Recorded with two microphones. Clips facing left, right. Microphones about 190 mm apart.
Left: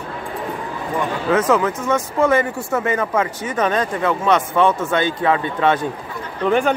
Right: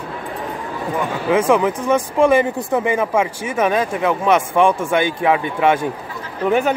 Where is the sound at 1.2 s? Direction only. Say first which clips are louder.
Right 2 dB; 10° right (ahead or behind).